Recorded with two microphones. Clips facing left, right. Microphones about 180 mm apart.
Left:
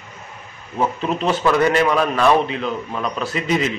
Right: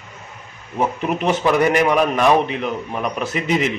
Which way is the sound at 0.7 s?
15° right (ahead or behind).